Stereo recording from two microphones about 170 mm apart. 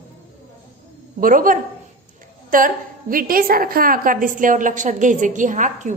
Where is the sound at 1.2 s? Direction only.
55° right (ahead or behind).